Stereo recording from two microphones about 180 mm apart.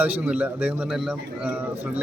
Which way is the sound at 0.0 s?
10° right (ahead or behind).